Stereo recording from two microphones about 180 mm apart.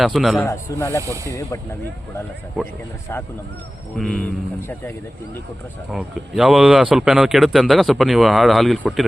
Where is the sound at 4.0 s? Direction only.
5° left (ahead or behind).